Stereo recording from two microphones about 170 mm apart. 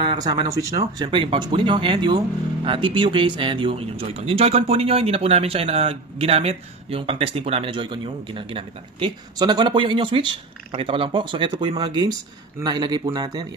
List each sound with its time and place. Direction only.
0.0 s speech: 25° right (ahead or behind)